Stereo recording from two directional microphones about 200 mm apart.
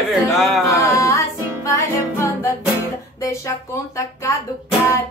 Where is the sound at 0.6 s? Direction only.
15° left (ahead or behind).